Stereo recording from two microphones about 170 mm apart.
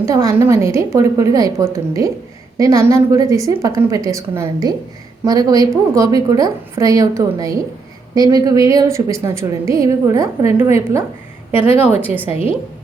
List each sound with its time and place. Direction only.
0.0 s a woman's voice: 20° right (ahead or behind)